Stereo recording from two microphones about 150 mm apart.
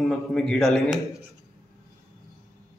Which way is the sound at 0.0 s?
5° left (ahead or behind).